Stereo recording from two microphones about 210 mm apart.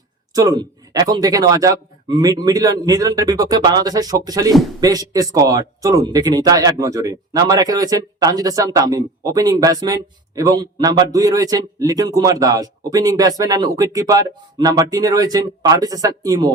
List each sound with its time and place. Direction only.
0.3 s speech: 20° right (ahead or behind)